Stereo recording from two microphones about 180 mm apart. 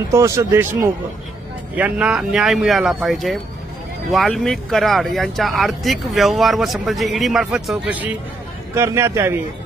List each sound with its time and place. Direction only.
0.1 s speech: 15° right (ahead or behind)